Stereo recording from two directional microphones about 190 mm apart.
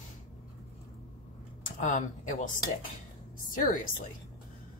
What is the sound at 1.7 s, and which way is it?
Speech, 40° left (ahead or behind).